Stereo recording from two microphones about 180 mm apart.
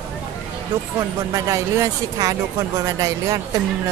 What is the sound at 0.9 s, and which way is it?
Speech, 20° right (ahead or behind).